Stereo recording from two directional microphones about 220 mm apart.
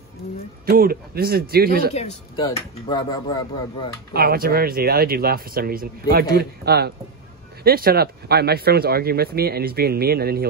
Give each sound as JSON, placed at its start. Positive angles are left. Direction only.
{"t": 0.7, "sound": "speech", "side_deg": -40}
{"t": 2.0, "sound": "speech", "side_deg": 25}
{"t": 4.1, "sound": "speech", "side_deg": -45}